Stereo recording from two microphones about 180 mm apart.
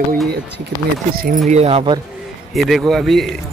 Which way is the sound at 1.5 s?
35° right (ahead or behind).